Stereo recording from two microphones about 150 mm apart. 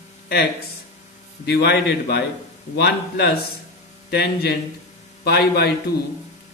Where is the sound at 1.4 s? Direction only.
90° left.